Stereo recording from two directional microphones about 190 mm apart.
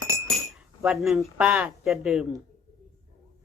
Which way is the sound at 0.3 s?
Centre (ahead or behind).